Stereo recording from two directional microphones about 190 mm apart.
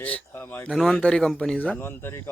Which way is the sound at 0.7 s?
Centre (ahead or behind).